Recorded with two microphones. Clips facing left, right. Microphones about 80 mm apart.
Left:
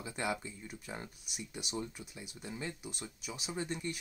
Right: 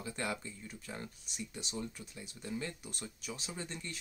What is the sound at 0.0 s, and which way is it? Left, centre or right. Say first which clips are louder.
Speech: left 2 dB; centre.